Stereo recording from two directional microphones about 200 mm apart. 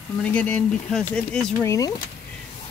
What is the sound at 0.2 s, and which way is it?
Speech, 5° left (ahead or behind).